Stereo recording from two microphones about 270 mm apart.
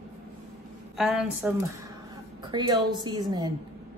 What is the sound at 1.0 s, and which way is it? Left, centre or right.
Speech, centre.